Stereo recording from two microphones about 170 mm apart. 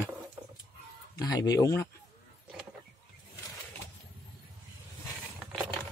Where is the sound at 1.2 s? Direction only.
20° left (ahead or behind).